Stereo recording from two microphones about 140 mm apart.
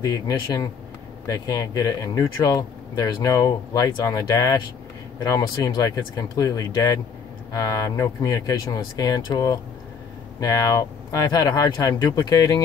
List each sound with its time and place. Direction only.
0.0 s speech: 25° left (ahead or behind)